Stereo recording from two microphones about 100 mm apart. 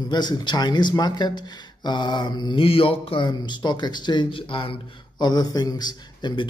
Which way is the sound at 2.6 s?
65° left (ahead or behind).